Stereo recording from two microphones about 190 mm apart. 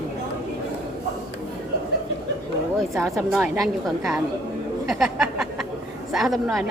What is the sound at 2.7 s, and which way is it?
A woman's voice, centre (ahead or behind).